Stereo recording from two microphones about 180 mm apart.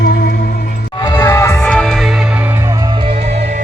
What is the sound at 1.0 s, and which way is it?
Music, 20° left (ahead or behind).